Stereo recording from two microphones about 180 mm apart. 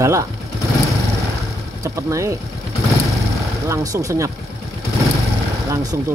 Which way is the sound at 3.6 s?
20° right (ahead or behind).